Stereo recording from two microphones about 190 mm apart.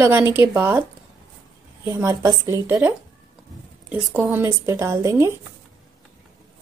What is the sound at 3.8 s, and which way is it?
Speech, 10° right (ahead or behind).